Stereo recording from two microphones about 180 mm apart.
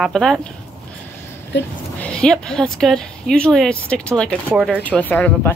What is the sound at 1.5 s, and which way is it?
Speech, 75° left (ahead or behind).